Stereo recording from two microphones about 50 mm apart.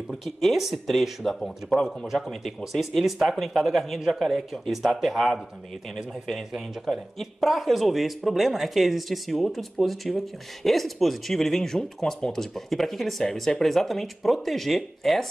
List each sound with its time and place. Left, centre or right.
0.1 s speech: centre
7.2 s speech: centre